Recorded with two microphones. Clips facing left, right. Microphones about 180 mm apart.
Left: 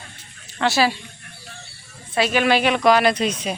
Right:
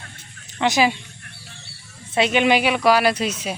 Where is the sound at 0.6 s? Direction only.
15° right (ahead or behind).